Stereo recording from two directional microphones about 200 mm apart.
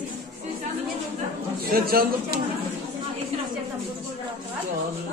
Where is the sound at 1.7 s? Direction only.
45° right (ahead or behind).